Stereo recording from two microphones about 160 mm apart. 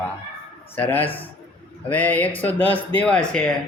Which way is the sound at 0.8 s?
10° left (ahead or behind).